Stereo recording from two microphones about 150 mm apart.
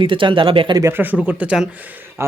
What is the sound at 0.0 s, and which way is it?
Speech, 35° right (ahead or behind).